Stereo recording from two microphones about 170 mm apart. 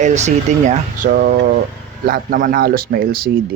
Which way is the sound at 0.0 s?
40° right (ahead or behind).